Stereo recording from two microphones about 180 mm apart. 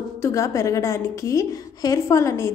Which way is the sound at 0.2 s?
15° left (ahead or behind).